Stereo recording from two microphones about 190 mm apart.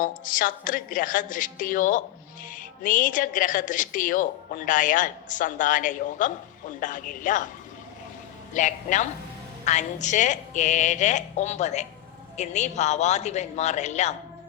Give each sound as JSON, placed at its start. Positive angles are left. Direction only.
{"t": 0.0, "sound": "speech", "side_deg": 45}
{"t": 8.5, "sound": "speech", "side_deg": 40}